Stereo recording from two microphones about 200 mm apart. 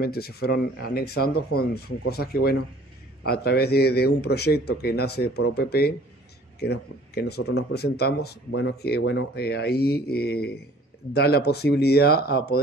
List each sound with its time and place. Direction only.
0.0 s speech: 50° left (ahead or behind)